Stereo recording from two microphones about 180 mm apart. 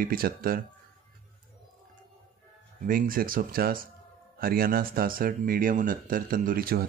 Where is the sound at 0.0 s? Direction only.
55° right (ahead or behind).